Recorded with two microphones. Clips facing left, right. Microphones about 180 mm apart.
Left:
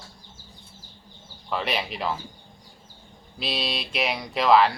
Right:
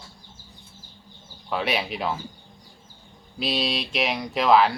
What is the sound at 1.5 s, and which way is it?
Speech, centre (ahead or behind).